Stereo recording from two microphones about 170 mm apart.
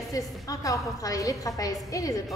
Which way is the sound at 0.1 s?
20° left (ahead or behind).